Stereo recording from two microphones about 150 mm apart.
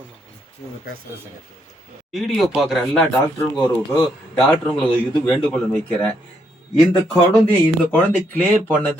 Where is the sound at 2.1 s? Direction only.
Centre (ahead or behind).